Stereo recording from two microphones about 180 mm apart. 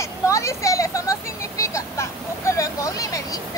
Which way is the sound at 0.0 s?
15° left (ahead or behind).